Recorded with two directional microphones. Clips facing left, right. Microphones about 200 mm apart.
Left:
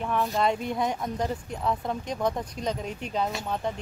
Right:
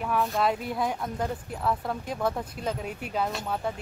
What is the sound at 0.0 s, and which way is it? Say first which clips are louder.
Speech: even; centre (ahead or behind).